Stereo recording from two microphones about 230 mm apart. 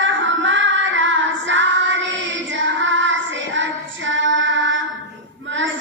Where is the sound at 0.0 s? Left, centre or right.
Right.